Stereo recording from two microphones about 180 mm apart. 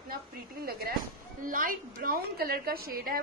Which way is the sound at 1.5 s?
50° right (ahead or behind).